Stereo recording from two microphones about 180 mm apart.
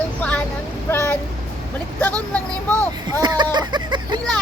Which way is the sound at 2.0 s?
10° left (ahead or behind).